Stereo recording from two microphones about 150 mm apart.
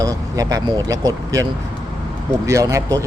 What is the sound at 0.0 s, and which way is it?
Speech, 25° right (ahead or behind).